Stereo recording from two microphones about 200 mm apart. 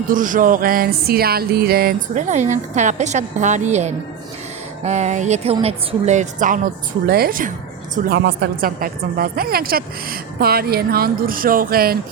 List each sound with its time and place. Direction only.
0.1 s music: 40° right (ahead or behind)
7.0 s a woman's voice: 50° right (ahead or behind)